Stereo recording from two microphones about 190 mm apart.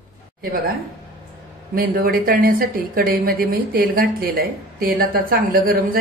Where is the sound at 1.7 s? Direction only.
50° right (ahead or behind).